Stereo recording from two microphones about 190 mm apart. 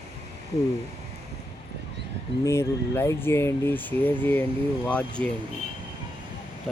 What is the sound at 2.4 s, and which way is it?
Speech, 15° left (ahead or behind).